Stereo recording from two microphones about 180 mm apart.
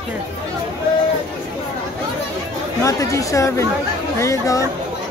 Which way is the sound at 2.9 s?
20° left (ahead or behind).